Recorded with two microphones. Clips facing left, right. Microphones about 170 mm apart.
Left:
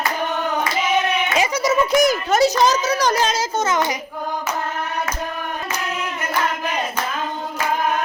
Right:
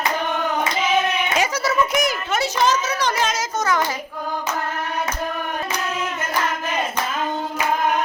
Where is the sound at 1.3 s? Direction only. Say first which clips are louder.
Left 2 dB; 5° left (ahead or behind).